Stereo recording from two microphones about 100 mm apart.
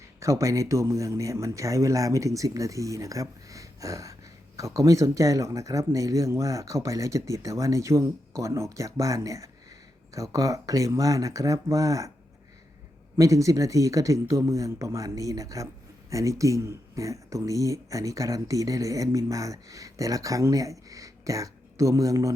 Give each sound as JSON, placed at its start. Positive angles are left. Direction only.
{"t": 0.2, "sound": "speech", "side_deg": -30}
{"t": 13.1, "sound": "speech", "side_deg": -35}